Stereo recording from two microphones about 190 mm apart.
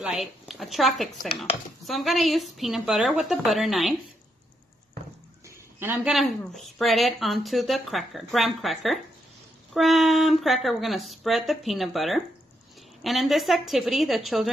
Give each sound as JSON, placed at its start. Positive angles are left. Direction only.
{"t": 0.0, "sound": "speech", "side_deg": -5}
{"t": 5.8, "sound": "speech", "side_deg": -10}
{"t": 6.1, "sound": "speech", "side_deg": 0}